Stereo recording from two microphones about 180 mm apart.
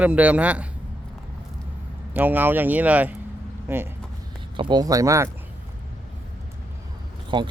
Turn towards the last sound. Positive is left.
turn(degrees=-25)  # may be behind; listen again after turning